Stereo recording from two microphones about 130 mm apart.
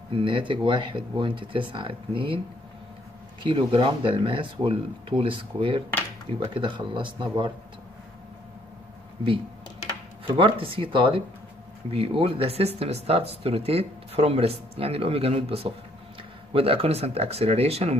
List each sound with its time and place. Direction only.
0.1 s speech: 40° right (ahead or behind)
3.4 s speech: 40° right (ahead or behind)
10.2 s speech: 40° right (ahead or behind)